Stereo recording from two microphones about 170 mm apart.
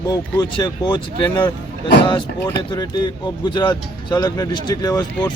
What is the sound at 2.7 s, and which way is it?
A man's voice, 25° left (ahead or behind).